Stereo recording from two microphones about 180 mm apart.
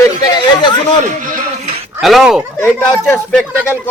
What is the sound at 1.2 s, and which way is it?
Music, 50° right (ahead or behind).